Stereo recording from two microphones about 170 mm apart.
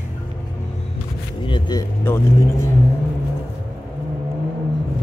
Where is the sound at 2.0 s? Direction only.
15° left (ahead or behind).